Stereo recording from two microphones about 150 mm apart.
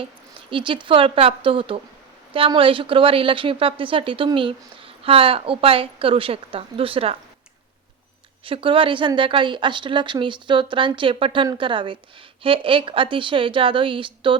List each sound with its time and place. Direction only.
0.5 s a woman's voice: 35° right (ahead or behind)
8.4 s a woman's voice: 35° right (ahead or behind)